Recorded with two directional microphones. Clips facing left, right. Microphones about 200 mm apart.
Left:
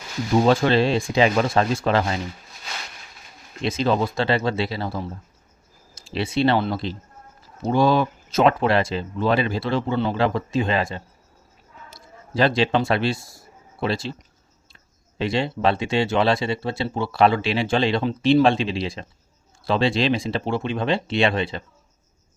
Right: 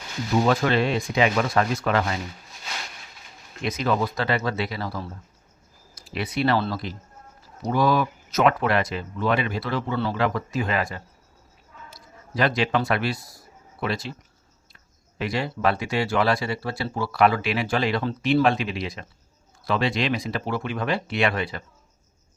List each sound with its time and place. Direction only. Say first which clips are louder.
0.4 s speech: left 4 dB; 30° left (ahead or behind)
3.6 s a man's voice: left 3 dB; 30° left (ahead or behind)
15.2 s speech: left 3 dB; 25° left (ahead or behind)